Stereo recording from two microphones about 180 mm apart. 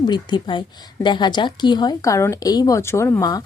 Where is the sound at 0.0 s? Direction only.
25° left (ahead or behind).